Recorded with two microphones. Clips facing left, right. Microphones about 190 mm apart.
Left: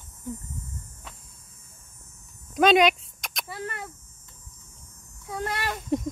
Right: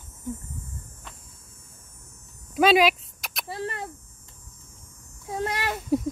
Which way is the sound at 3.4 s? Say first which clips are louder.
Right 4 dB; 30° right (ahead or behind).